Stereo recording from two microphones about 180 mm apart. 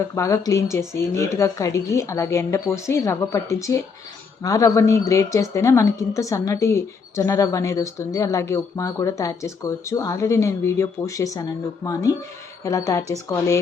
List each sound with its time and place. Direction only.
0.2 s a woman's voice: 15° left (ahead or behind)
12.6 s a woman's voice: 20° left (ahead or behind)